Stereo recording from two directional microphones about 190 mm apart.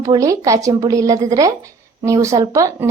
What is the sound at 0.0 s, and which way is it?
A woman's voice, 15° right (ahead or behind).